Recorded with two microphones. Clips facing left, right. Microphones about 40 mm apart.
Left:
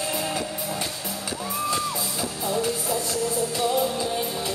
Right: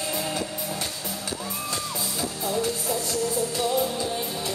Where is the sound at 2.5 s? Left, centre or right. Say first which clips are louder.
Left 1 dB; centre.